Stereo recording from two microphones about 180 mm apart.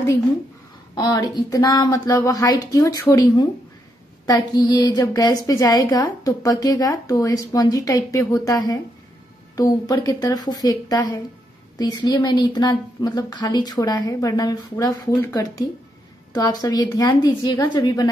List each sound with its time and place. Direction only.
0.9 s a woman's voice: 20° left (ahead or behind)